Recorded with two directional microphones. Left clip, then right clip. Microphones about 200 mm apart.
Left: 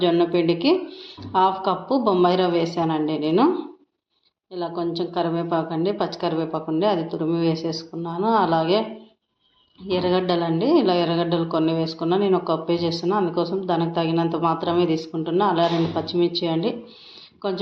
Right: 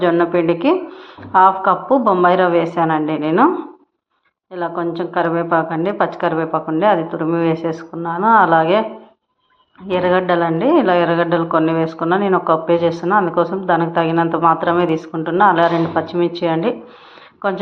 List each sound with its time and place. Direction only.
0.0 s a woman's voice: 5° right (ahead or behind)
0.5 s speech: 35° right (ahead or behind)
1.3 s a woman's voice: 5° right (ahead or behind)
4.8 s a woman's voice: 5° right (ahead or behind)
9.9 s speech: 5° right (ahead or behind)